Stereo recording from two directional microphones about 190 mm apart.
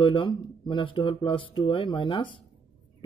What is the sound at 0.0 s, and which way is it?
Speech, 25° left (ahead or behind).